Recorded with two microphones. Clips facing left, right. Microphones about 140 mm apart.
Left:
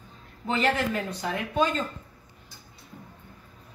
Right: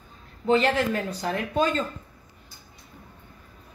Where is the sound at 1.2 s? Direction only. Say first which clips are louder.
Right 1 dB; 40° right (ahead or behind).